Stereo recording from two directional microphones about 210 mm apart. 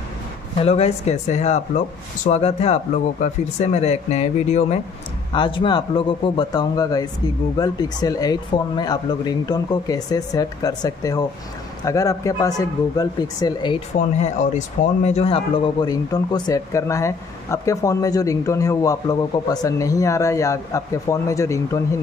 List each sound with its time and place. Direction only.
0.6 s speech: 30° left (ahead or behind)
13.9 s speech: 35° left (ahead or behind); by 21.8 s 15° left (ahead or behind)